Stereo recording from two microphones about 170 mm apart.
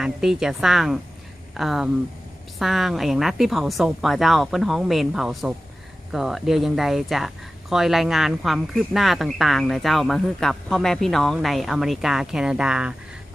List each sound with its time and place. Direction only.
0.0 s speech: 5° right (ahead or behind)